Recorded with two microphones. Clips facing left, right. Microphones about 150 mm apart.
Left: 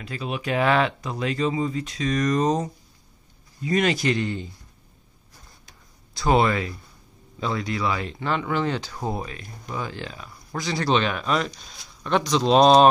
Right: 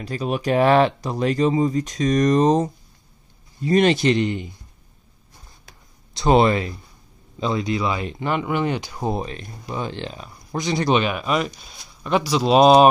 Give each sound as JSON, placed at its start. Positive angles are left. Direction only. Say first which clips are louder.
{"t": 0.0, "sound": "speech", "louder": "right 6 dB", "side_deg": -40}
{"t": 6.1, "sound": "speech", "louder": "right 4 dB", "side_deg": -20}